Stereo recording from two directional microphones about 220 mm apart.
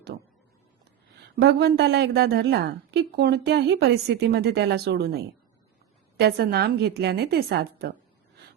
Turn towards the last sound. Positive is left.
turn(degrees=-45)  # may be behind; listen again after turning